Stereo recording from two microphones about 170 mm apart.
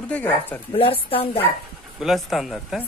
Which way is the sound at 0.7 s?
30° left (ahead or behind).